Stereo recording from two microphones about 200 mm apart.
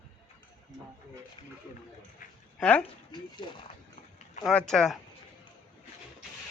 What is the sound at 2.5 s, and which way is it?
Speech, 5° left (ahead or behind).